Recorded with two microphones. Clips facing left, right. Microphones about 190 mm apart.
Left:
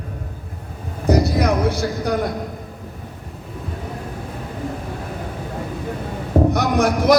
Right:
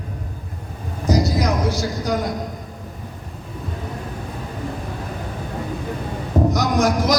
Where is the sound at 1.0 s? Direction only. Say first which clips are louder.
Left 2 dB; 60° left (ahead or behind).